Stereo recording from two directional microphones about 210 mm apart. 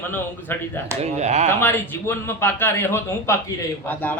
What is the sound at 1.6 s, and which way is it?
A man's voice, 10° left (ahead or behind).